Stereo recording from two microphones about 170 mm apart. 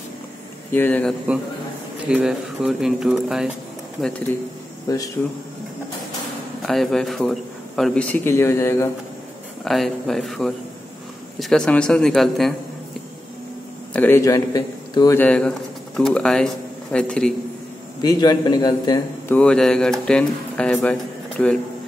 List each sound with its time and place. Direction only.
0.7 s a man's voice: 10° left (ahead or behind)
2.0 s speech: 5° right (ahead or behind)
4.8 s speech: 20° left (ahead or behind)
6.6 s a man's voice: centre (ahead or behind)
9.7 s speech: centre (ahead or behind)
13.9 s a man's voice: 15° left (ahead or behind)
15.1 s a man's voice: 5° left (ahead or behind)
18.0 s a man's voice: 25° left (ahead or behind)
19.3 s speech: 5° left (ahead or behind)